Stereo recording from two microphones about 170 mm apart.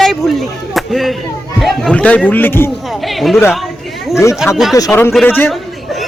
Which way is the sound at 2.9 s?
Centre (ahead or behind).